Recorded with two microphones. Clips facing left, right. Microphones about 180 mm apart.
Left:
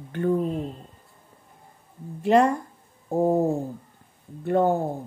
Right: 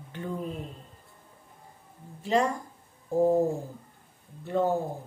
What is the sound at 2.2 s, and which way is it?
Speech, 60° left (ahead or behind).